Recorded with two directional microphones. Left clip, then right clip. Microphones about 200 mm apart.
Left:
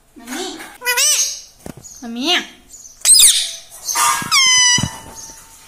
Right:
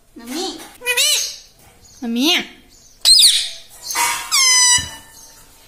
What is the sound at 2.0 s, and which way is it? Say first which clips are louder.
Speech: right 1 dB; 75° right (ahead or behind).